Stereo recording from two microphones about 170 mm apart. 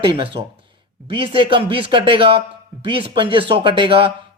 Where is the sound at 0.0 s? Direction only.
30° right (ahead or behind).